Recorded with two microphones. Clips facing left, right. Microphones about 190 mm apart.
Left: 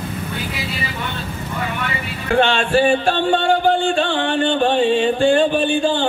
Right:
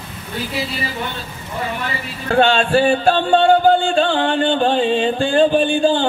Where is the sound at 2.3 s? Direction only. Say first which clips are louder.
Right 1 dB; 35° right (ahead or behind).